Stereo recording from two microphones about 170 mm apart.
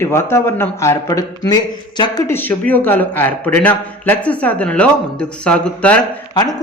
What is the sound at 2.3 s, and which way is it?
Speech, 10° left (ahead or behind).